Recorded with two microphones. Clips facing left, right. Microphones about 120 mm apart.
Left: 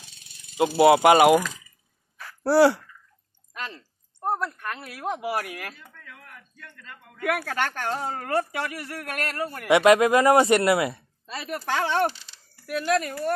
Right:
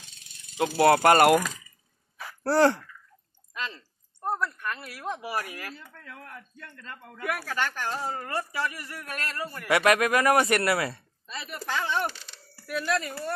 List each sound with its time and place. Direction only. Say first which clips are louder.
0.6 s speech: left 4 dB; 10° left (ahead or behind)
2.4 s speech: left 3 dB; 10° left (ahead or behind)
4.4 s a woman's voice: even; 60° left (ahead or behind)
5.2 s speech: left 4 dB; 75° left (ahead or behind)
5.9 s a man's voice: right 3 dB; 35° right (ahead or behind)
7.2 s a woman's voice: left 4 dB; 65° left (ahead or behind)
9.7 s speech: left 5 dB; 20° left (ahead or behind)
11.2 s speech: left 5 dB; 85° left; by 12.1 s 70° left (ahead or behind)
12.6 s speech: left 4 dB; 50° left (ahead or behind)